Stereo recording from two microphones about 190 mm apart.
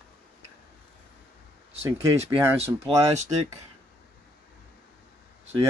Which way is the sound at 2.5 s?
30° right (ahead or behind).